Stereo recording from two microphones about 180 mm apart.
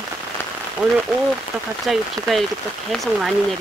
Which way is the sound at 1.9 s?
Centre (ahead or behind).